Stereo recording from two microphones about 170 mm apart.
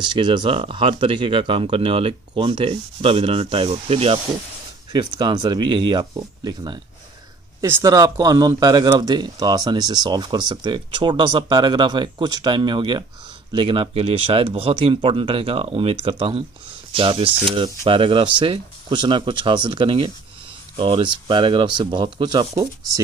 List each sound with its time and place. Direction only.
0.0 s speech: 25° right (ahead or behind)